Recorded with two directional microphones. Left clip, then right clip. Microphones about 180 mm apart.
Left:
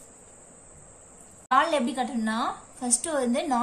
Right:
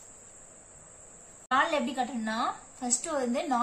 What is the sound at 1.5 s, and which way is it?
A woman's voice, 25° left (ahead or behind).